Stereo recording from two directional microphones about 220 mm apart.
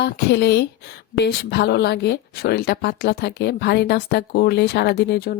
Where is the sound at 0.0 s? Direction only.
50° left (ahead or behind).